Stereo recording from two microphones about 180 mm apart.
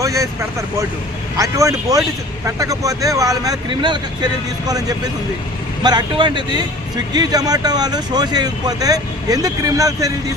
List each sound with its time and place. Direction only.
0.0 s speech: 15° right (ahead or behind)
1.4 s speech: 20° right (ahead or behind)